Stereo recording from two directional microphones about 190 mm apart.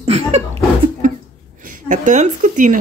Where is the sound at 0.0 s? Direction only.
30° right (ahead or behind).